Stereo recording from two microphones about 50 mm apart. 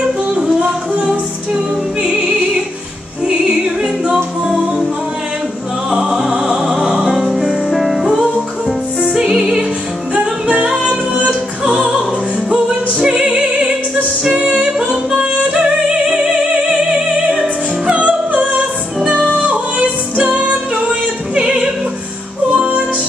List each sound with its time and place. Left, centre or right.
0.4 s music: right
4.1 s music: centre
5.9 s music: centre
13.0 s music: centre
16.9 s music: right
21.4 s opera: centre
22.5 s music: right